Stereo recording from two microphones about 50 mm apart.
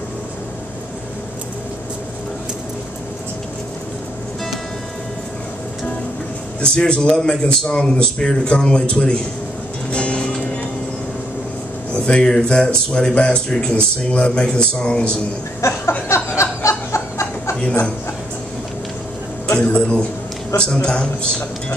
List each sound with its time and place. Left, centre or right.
6.6 s speech: left
9.8 s music: left
11.9 s speech: centre
15.6 s a sound: left
16.1 s snicker: left
19.4 s a man's voice: left